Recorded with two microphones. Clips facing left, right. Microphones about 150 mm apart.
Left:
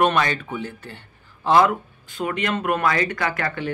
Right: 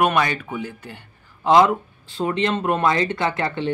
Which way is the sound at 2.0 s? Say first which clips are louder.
Right 3 dB; 30° right (ahead or behind).